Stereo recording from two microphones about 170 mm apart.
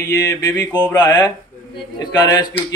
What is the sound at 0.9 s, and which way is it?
A man's voice, 25° left (ahead or behind).